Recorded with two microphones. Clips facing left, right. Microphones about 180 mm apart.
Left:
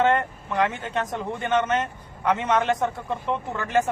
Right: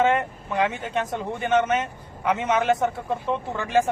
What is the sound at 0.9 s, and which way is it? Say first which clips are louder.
Speech: right 1 dB; 25° right (ahead or behind).